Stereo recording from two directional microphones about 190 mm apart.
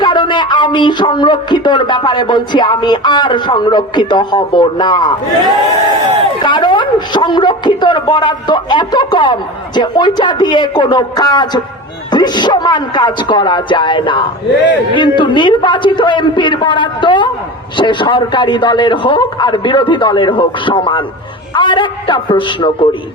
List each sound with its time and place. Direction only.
0.0 s speech: 25° left (ahead or behind)